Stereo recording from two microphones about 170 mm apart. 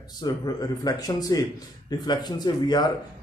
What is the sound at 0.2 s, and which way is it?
Speech, 20° left (ahead or behind).